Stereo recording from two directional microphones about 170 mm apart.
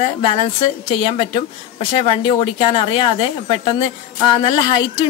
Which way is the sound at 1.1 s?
30° left (ahead or behind).